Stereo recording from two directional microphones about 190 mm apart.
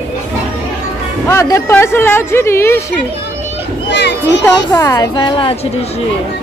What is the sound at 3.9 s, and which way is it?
Speech, 65° left (ahead or behind).